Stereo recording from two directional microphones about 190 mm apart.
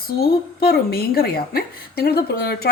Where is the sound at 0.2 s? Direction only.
55° left (ahead or behind).